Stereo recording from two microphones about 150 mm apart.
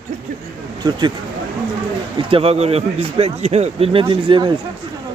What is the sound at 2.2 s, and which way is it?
Speech, 40° right (ahead or behind).